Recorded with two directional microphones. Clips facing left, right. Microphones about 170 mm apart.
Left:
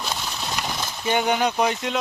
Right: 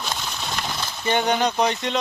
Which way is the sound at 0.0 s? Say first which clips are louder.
Even; centre (ahead or behind).